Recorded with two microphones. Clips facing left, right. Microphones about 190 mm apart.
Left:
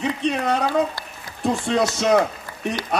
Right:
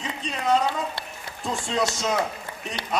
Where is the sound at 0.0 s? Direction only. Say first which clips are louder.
Left 7 dB; 65° left (ahead or behind).